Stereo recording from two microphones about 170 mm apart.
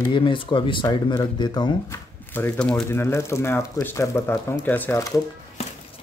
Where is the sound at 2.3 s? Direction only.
10° left (ahead or behind).